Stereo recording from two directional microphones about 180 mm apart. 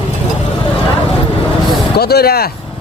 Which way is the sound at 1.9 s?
60° left (ahead or behind).